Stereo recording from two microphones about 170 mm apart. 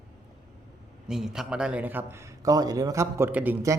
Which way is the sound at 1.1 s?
5° right (ahead or behind).